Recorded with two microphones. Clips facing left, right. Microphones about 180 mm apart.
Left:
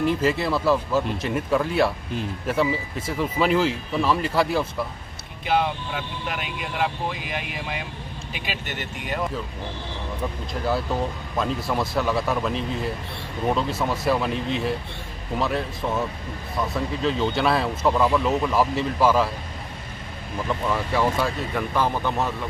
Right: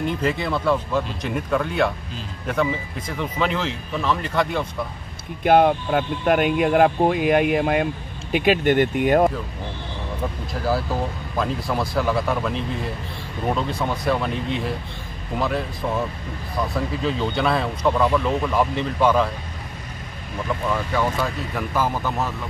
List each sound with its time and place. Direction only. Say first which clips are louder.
0.0 s speech: left 2 dB; 5° left (ahead or behind)
5.4 s speech: right 8 dB; 55° right (ahead or behind)
11.3 s speech: right 1 dB; centre (ahead or behind)
21.5 s speech: right 1 dB; 5° right (ahead or behind)